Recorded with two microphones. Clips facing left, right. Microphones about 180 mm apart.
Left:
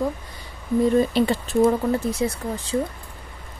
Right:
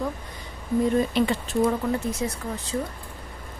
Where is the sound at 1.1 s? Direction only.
35° left (ahead or behind).